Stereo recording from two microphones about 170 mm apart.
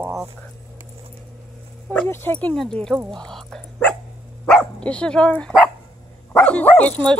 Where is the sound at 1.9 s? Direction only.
10° left (ahead or behind).